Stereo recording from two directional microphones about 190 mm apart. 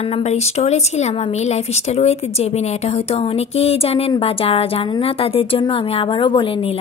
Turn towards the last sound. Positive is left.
turn(degrees=30)  # may be behind; listen again after turning